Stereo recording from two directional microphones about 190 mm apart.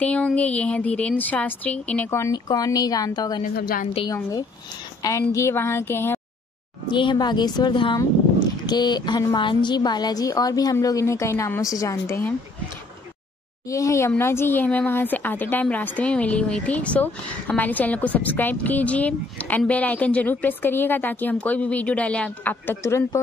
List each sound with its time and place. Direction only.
0.0 s speech: 5° left (ahead or behind)
3.4 s a woman's voice: 50° left (ahead or behind)
3.9 s a woman's voice: 20° left (ahead or behind)
6.9 s a woman's voice: 25° left (ahead or behind)
13.7 s speech: 15° left (ahead or behind)